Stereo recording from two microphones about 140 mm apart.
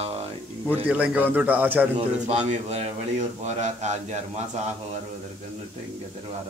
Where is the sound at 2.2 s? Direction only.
50° right (ahead or behind).